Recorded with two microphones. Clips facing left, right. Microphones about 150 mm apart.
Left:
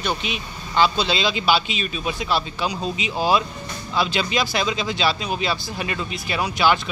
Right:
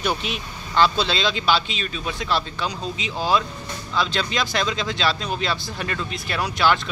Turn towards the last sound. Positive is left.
turn(degrees=5)  # may be behind; listen again after turning